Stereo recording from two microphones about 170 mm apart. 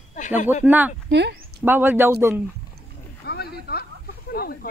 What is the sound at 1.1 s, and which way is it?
Speech, 75° right (ahead or behind).